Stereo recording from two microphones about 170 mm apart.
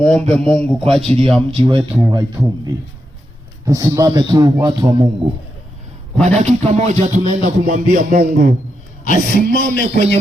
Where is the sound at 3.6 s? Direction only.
20° right (ahead or behind).